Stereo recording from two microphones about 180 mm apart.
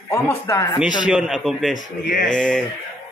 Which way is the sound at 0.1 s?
15° left (ahead or behind).